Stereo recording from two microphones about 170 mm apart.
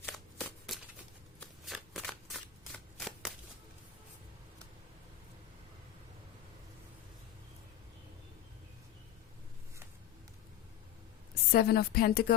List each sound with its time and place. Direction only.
0.0 s shuffling cards: 5° left (ahead or behind)
11.5 s a woman's voice: 65° left (ahead or behind)